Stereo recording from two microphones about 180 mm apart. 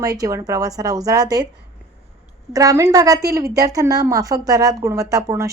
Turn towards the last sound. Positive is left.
turn(degrees=-20)  # may be behind; listen again after turning